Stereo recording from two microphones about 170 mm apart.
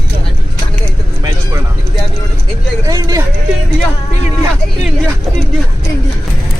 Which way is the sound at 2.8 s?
20° right (ahead or behind).